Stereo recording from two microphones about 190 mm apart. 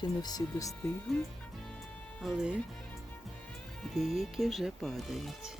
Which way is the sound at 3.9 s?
Centre (ahead or behind).